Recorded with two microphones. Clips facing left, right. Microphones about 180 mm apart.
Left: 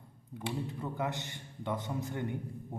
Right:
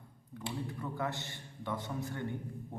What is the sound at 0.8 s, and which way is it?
A man's voice, 20° left (ahead or behind).